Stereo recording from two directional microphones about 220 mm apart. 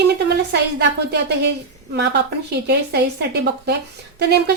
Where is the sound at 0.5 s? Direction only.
50° right (ahead or behind).